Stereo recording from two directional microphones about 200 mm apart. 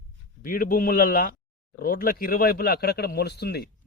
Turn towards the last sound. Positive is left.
turn(degrees=55)  # may be behind; listen again after turning